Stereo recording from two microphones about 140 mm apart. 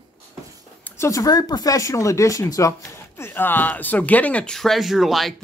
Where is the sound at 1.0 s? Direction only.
25° left (ahead or behind).